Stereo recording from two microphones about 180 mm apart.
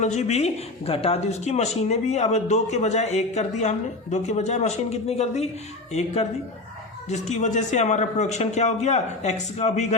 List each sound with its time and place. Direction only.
0.0 s speech: 40° left (ahead or behind)